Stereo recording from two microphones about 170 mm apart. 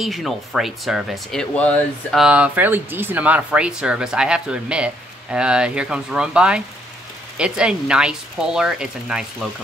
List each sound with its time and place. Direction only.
0.0 s speech: centre (ahead or behind)